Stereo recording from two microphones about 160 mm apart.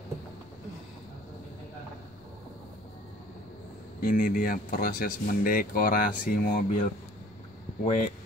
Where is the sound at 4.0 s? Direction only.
60° left (ahead or behind).